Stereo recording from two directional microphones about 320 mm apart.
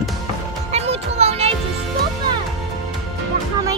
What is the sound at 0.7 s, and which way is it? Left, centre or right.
Music, centre.